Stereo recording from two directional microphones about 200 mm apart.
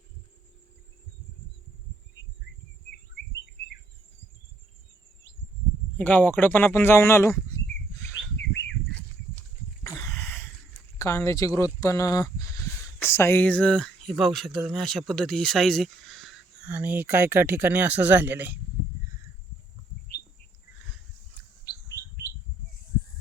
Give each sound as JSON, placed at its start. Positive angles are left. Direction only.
{"t": 6.0, "sound": "speech", "side_deg": 10}
{"t": 8.4, "sound": "bird", "side_deg": 60}
{"t": 10.0, "sound": "speech", "side_deg": 15}
{"t": 21.6, "sound": "bird", "side_deg": 15}